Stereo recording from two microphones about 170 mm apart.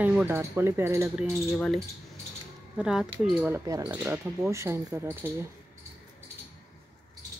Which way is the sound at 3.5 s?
15° right (ahead or behind).